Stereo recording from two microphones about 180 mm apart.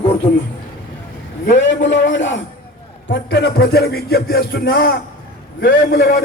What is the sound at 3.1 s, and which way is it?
Speech, 75° left (ahead or behind).